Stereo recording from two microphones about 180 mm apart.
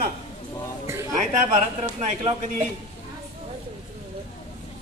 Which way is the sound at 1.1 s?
40° right (ahead or behind).